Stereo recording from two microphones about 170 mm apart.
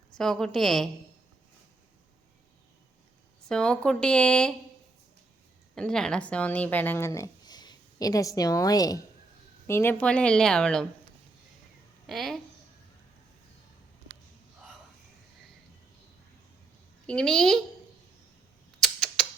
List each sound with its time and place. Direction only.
0.2 s speech: 5° left (ahead or behind)
3.5 s speech: 5° left (ahead or behind)
5.7 s speech: 5° left (ahead or behind)
12.0 s speech: centre (ahead or behind)
17.1 s speech: 5° left (ahead or behind)
18.8 s creak: centre (ahead or behind)